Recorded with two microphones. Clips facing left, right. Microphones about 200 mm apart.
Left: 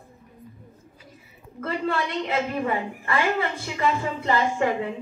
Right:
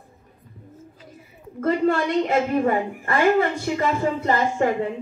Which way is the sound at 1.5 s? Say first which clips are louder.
Right 7 dB; 45° right (ahead or behind).